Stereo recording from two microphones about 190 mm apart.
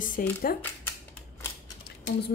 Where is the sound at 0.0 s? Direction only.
45° left (ahead or behind).